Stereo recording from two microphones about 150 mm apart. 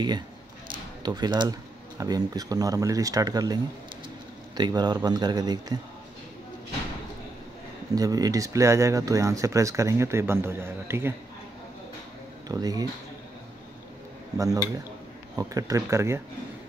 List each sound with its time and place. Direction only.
1.0 s speech: 30° right (ahead or behind)
4.6 s speech: 30° right (ahead or behind)
7.9 s speech: 25° right (ahead or behind)
12.4 s speech: 25° right (ahead or behind)
14.3 s speech: 20° right (ahead or behind)